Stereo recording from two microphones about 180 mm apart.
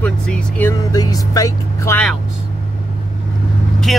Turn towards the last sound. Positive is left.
turn(degrees=0)  # may be behind; listen again after turning